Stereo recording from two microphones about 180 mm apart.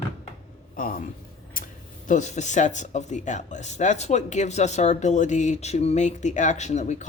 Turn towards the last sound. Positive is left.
turn(degrees=40)  # may be behind; listen again after turning